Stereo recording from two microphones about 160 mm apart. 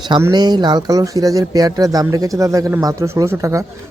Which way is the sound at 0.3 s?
25° right (ahead or behind).